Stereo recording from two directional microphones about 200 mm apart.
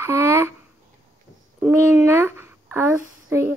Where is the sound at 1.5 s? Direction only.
10° right (ahead or behind).